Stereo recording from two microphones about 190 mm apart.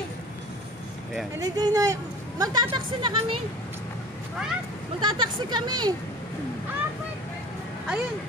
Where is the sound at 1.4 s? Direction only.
20° right (ahead or behind).